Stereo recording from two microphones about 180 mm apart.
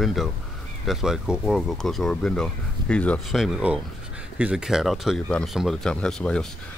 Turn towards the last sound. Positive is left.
turn(degrees=5)  # may be behind; listen again after turning